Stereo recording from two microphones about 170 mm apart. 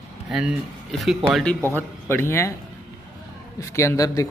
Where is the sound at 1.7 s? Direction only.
15° left (ahead or behind).